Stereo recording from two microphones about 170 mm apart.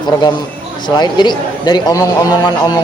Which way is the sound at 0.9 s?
25° left (ahead or behind).